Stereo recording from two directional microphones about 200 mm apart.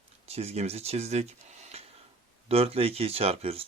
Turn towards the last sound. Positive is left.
turn(degrees=-30)  # may be behind; listen again after turning